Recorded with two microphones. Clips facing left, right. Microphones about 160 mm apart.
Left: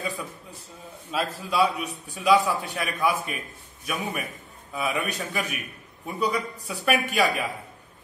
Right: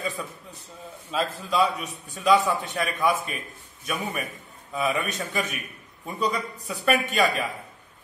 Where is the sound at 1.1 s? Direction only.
5° left (ahead or behind).